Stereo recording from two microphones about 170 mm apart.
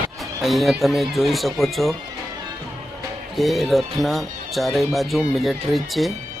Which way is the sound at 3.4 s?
Centre (ahead or behind).